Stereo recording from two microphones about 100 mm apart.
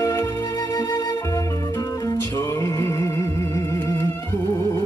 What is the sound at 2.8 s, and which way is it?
Music, 25° left (ahead or behind).